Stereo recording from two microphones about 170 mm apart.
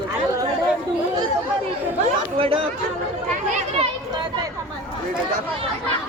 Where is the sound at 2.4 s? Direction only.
35° right (ahead or behind).